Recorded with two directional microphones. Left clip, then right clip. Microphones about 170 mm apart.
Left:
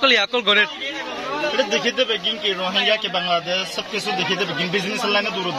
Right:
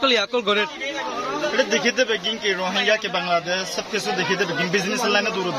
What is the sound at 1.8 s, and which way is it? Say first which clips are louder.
Speech: even; 10° right (ahead or behind).